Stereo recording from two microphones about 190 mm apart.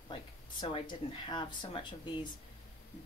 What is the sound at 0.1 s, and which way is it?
Speech, 25° left (ahead or behind).